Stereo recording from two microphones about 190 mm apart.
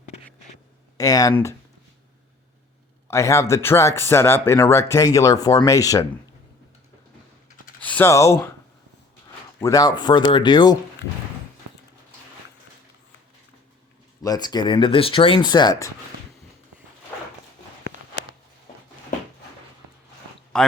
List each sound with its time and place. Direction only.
0.9 s speech: 20° left (ahead or behind)
3.1 s speech: 15° left (ahead or behind)
7.8 s speech: 10° left (ahead or behind)
9.6 s speech: 15° left (ahead or behind)
14.2 s speech: 20° left (ahead or behind)
20.5 s speech: 5° left (ahead or behind)